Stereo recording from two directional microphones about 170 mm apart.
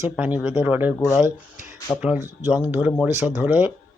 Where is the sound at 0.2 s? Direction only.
5° right (ahead or behind).